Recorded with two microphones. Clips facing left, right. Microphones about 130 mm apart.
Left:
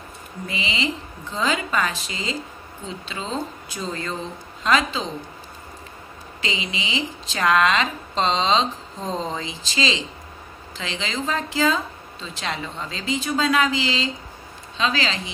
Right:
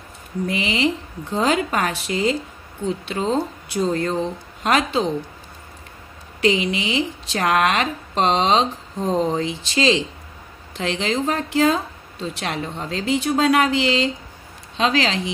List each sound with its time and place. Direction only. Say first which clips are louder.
0.5 s a woman's voice: right 5 dB; 65° right (ahead or behind)
6.4 s a woman's voice: right 10 dB; 60° right (ahead or behind)